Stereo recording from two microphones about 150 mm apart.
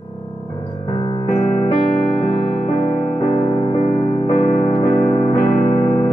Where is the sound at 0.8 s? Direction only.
30° left (ahead or behind).